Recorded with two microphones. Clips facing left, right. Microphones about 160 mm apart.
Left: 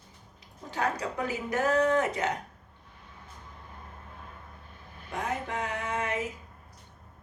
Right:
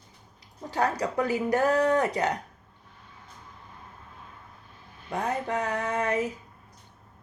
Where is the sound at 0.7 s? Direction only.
35° right (ahead or behind).